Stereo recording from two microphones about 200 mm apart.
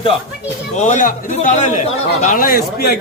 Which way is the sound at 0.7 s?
40° left (ahead or behind).